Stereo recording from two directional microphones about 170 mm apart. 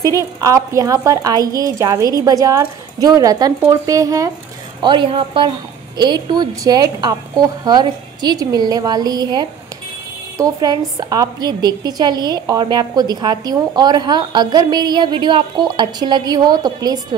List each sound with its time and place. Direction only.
0.0 s a woman's voice: 20° right (ahead or behind)